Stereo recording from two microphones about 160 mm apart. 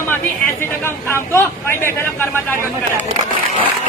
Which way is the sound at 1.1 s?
15° left (ahead or behind).